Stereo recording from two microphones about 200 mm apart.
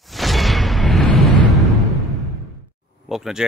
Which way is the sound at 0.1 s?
Centre (ahead or behind).